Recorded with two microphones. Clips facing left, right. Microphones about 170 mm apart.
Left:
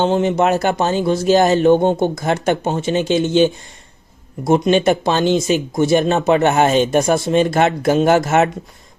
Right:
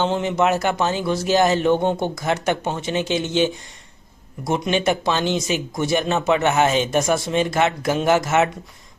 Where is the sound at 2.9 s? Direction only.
45° left (ahead or behind).